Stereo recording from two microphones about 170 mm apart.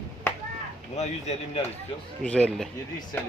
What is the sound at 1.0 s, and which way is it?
Speech, 40° left (ahead or behind).